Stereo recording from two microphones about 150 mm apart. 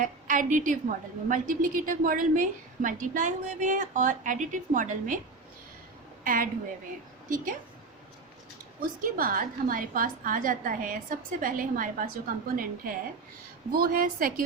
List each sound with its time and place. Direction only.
0.0 s a woman's voice: 60° right (ahead or behind)
6.2 s a woman's voice: 65° right (ahead or behind)
8.8 s a woman's voice: 65° right (ahead or behind)